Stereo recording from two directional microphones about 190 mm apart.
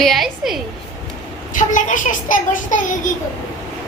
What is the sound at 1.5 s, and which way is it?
A child's voice, 45° left (ahead or behind).